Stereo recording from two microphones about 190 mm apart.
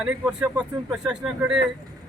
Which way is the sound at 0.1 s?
5° right (ahead or behind).